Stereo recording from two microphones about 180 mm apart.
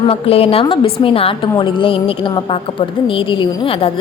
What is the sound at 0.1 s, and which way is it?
A woman's voice, 30° left (ahead or behind).